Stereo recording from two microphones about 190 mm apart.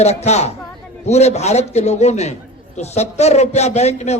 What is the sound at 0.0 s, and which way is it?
A man's voice, 35° left (ahead or behind).